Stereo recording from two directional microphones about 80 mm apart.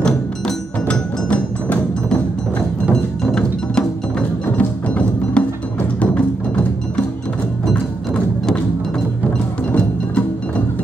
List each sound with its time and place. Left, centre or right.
0.0 s music: centre
4.6 s music: centre